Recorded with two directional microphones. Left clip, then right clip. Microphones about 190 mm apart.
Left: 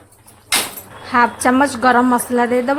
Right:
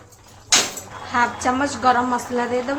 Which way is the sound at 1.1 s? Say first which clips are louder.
Left 6 dB; 40° left (ahead or behind).